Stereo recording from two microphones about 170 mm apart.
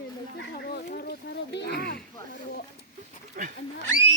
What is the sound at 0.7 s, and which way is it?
Speech, 65° left (ahead or behind).